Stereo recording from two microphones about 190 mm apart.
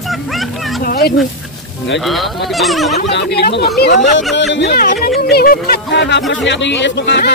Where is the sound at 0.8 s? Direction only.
55° left (ahead or behind).